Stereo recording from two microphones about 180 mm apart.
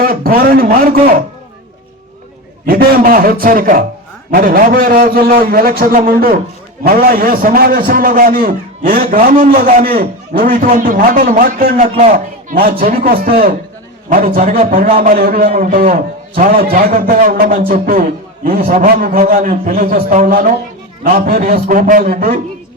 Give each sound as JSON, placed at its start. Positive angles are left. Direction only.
{"t": 0.0, "sound": "a man's voice", "side_deg": -55}
{"t": 2.6, "sound": "a man's voice", "side_deg": -55}
{"t": 11.9, "sound": "a man's voice", "side_deg": -40}